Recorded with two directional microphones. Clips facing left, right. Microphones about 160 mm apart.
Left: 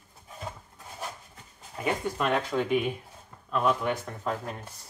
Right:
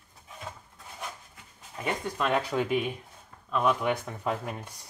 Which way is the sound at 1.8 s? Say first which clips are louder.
Left 2 dB; centre (ahead or behind).